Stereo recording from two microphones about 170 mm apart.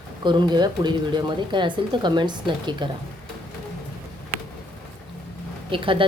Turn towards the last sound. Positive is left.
turn(degrees=-30)  # may be behind; listen again after turning